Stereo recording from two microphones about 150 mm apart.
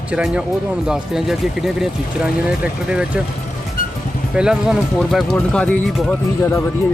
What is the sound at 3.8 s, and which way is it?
Vehicle, 70° left (ahead or behind).